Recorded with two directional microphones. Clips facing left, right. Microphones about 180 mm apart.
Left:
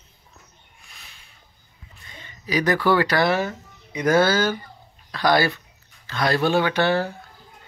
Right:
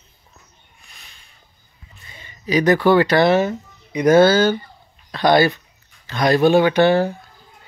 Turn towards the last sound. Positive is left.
turn(degrees=-15)  # may be behind; listen again after turning